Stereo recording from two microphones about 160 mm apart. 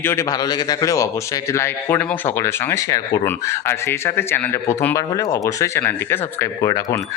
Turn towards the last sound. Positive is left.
turn(degrees=20)  # may be behind; listen again after turning